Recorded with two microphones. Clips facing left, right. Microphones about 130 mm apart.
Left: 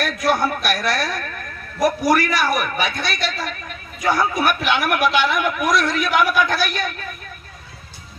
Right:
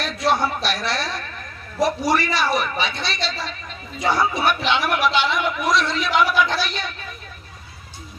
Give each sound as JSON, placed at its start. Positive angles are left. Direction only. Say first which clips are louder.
{"t": 0.0, "sound": "a man's voice", "louder": "left 1 dB", "side_deg": -30}